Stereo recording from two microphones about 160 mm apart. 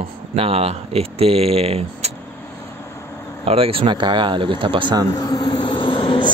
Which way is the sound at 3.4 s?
35° right (ahead or behind).